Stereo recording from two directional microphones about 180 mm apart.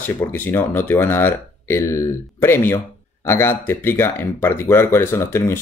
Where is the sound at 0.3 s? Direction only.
10° left (ahead or behind).